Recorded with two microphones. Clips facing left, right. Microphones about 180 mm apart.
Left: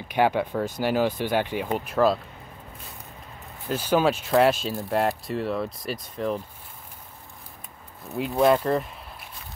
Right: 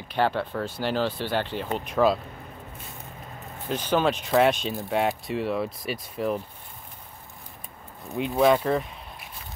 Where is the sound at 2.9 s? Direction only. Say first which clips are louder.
Right 2 dB; centre (ahead or behind).